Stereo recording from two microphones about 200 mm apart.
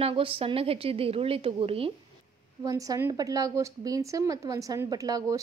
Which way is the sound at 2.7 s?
15° right (ahead or behind).